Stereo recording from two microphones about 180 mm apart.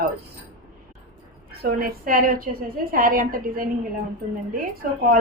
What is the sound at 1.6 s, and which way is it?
A woman's voice, 55° right (ahead or behind).